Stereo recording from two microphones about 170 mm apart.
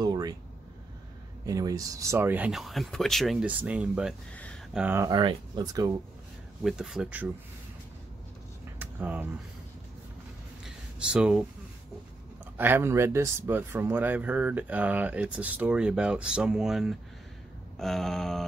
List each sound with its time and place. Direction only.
0.0 s a sound: 25° right (ahead or behind)
1.4 s speech: 20° right (ahead or behind)
4.3 s speech: 5° left (ahead or behind)
4.7 s speech: 10° right (ahead or behind)
5.0 s speech: 25° right (ahead or behind)
6.6 s speech: 5° right (ahead or behind)
8.7 s a sound: 10° right (ahead or behind)
10.6 s a sound: 5° right (ahead or behind)
12.5 s speech: 10° right (ahead or behind)